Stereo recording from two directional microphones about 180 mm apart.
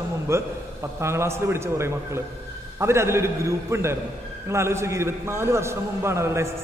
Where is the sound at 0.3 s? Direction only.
15° right (ahead or behind).